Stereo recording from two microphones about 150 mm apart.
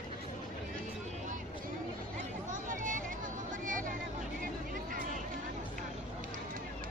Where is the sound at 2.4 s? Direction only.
60° right (ahead or behind).